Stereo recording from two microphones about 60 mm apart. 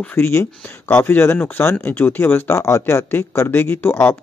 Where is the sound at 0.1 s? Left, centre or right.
Left.